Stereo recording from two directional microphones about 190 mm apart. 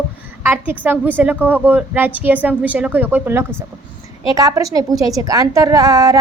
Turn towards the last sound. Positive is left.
turn(degrees=-20)  # may be behind; listen again after turning